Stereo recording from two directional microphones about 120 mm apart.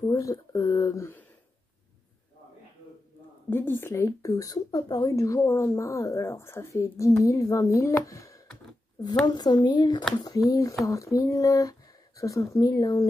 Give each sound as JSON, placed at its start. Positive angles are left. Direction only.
{"t": 0.0, "sound": "speech", "side_deg": 25}
{"t": 3.4, "sound": "speech", "side_deg": 15}